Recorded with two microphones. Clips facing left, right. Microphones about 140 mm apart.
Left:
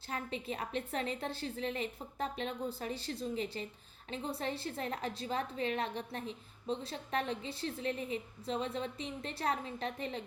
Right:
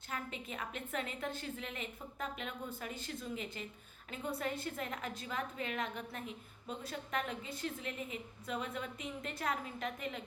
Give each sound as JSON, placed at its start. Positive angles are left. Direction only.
{"t": 0.1, "sound": "a woman's voice", "side_deg": 35}